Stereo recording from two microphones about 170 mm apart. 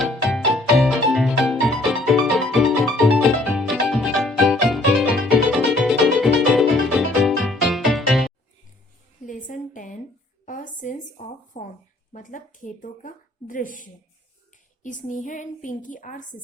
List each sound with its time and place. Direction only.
0.0 s music: centre (ahead or behind)
9.2 s a sound: 50° left (ahead or behind)
11.5 s a woman's voice: 50° left (ahead or behind)